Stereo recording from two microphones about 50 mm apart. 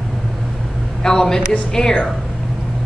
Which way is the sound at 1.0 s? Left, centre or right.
Centre.